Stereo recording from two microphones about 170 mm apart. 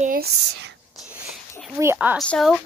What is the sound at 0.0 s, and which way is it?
Speech, 65° right (ahead or behind).